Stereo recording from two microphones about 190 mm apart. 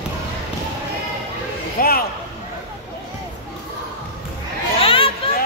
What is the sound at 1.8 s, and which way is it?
Speech, 50° left (ahead or behind).